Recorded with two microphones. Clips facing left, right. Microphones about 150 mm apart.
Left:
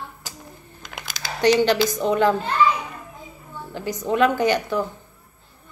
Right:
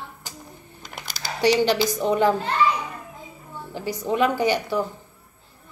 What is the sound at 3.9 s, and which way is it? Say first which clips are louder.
Speech: left 2 dB; 10° right (ahead or behind).